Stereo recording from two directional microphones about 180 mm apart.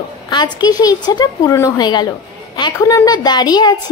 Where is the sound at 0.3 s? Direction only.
25° left (ahead or behind).